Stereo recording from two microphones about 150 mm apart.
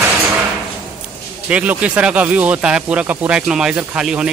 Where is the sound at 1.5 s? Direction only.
10° right (ahead or behind).